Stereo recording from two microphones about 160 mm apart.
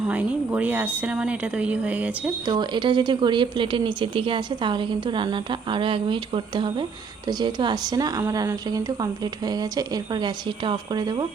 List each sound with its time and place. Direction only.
0.1 s speech: 10° right (ahead or behind)
2.5 s a woman's voice: 30° right (ahead or behind)